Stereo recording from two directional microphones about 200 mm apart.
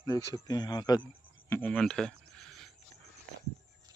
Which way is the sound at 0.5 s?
20° left (ahead or behind).